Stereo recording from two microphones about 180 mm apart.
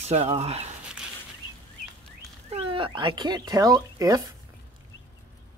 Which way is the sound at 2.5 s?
30° right (ahead or behind).